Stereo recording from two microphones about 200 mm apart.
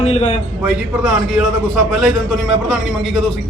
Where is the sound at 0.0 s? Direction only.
30° left (ahead or behind).